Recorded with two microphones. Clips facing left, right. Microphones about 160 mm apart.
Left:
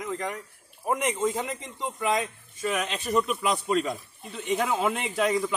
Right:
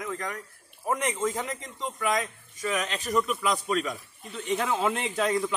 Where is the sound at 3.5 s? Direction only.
30° left (ahead or behind).